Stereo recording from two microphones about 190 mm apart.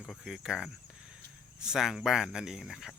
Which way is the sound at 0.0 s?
Centre (ahead or behind).